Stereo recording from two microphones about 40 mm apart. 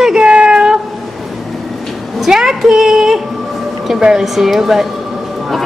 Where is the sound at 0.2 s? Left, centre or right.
Right.